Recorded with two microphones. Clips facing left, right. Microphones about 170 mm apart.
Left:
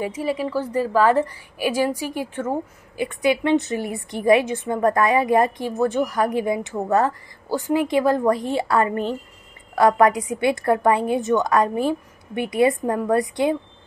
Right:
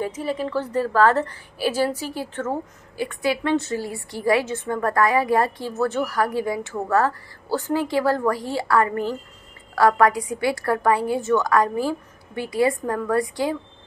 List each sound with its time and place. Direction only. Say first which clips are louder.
0.0 s a woman's voice: left 2 dB; 10° left (ahead or behind)